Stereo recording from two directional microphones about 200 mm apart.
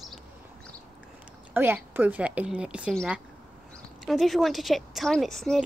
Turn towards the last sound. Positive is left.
turn(degrees=0)  # may be behind; listen again after turning